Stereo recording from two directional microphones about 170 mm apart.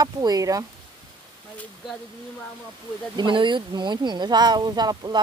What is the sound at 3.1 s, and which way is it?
Speech, 30° right (ahead or behind).